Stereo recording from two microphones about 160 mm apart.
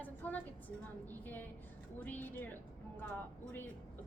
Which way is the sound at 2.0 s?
10° left (ahead or behind).